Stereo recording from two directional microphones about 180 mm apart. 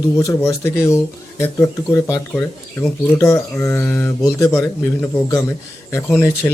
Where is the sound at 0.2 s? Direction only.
15° left (ahead or behind).